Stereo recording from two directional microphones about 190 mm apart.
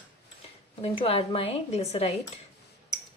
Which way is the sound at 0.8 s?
30° left (ahead or behind).